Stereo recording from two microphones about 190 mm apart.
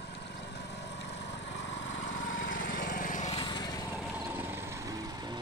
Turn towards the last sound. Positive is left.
turn(degrees=-20)  # may be behind; listen again after turning